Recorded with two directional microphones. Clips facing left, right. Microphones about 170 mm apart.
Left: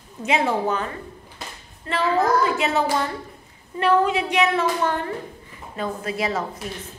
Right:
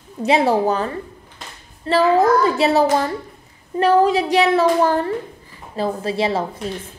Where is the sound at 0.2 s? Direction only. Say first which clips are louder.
Right 6 dB; 35° right (ahead or behind).